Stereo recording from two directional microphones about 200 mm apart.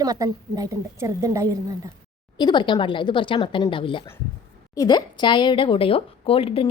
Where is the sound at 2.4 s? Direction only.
20° left (ahead or behind).